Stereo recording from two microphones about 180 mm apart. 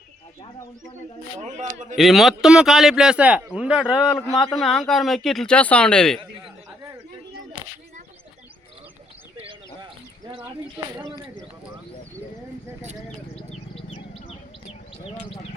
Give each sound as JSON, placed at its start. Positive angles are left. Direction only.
{"t": 1.5, "sound": "a man's voice", "side_deg": -40}
{"t": 2.0, "sound": "a man's voice", "side_deg": 0}
{"t": 13.9, "sound": "bird", "side_deg": 30}